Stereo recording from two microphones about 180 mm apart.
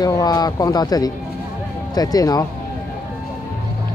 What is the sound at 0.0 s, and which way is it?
Speech, 20° left (ahead or behind).